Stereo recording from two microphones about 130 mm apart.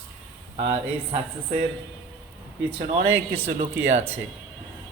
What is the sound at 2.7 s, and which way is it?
Speech, 50° right (ahead or behind).